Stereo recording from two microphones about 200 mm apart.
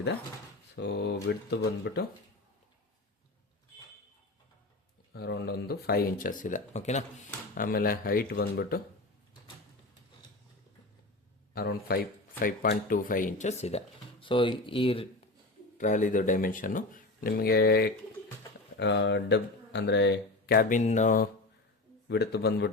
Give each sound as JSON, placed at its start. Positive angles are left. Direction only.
{"t": 0.8, "sound": "speech", "side_deg": 55}
{"t": 5.1, "sound": "speech", "side_deg": 55}
{"t": 7.5, "sound": "speech", "side_deg": 45}
{"t": 11.5, "sound": "speech", "side_deg": 50}
{"t": 15.8, "sound": "speech", "side_deg": 40}
{"t": 18.8, "sound": "speech", "side_deg": 60}
{"t": 22.1, "sound": "speech", "side_deg": 55}